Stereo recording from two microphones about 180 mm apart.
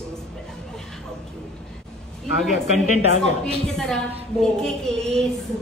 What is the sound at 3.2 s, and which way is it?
A woman's voice, 5° left (ahead or behind).